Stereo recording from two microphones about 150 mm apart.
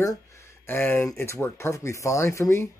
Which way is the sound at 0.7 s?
15° left (ahead or behind).